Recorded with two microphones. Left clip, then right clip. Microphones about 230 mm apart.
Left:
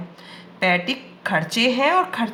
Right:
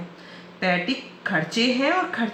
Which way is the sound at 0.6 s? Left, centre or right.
Left.